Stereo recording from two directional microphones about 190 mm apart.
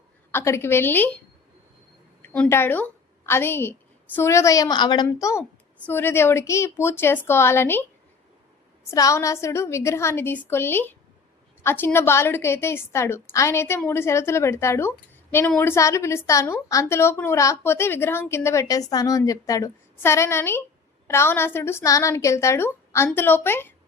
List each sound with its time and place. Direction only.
0.3 s a woman's voice: 15° left (ahead or behind)
2.3 s a woman's voice: 10° left (ahead or behind)
8.9 s a woman's voice: 15° left (ahead or behind)